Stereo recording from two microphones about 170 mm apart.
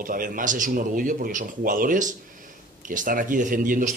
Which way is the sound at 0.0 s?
55° right (ahead or behind).